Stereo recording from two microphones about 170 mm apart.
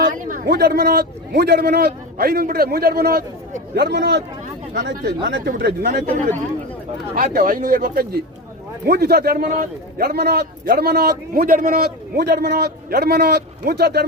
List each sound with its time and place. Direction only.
0.0 s a man's voice: 50° right (ahead or behind)
7.2 s a man's voice: 55° right (ahead or behind)